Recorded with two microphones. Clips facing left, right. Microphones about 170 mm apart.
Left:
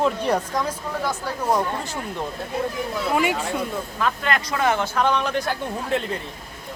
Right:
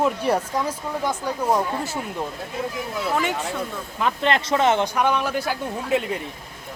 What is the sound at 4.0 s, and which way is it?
Speech, 20° right (ahead or behind).